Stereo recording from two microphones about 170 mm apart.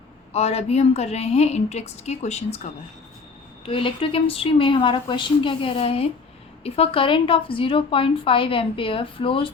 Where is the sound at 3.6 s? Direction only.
30° left (ahead or behind).